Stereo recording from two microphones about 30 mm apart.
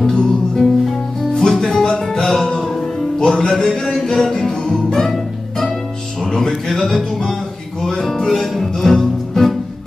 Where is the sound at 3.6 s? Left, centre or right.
Centre.